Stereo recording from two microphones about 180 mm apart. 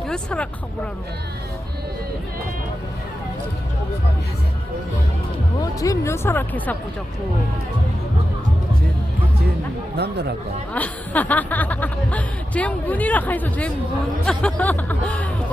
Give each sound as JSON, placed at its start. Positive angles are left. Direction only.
{"t": 0.1, "sound": "speech", "side_deg": 5}
{"t": 5.6, "sound": "speech", "side_deg": 20}
{"t": 9.9, "sound": "speech", "side_deg": -65}
{"t": 10.7, "sound": "speech", "side_deg": 10}